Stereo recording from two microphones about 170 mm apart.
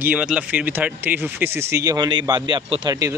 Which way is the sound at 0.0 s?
10° right (ahead or behind).